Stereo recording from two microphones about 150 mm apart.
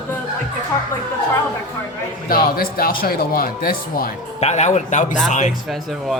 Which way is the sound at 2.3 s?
75° left (ahead or behind).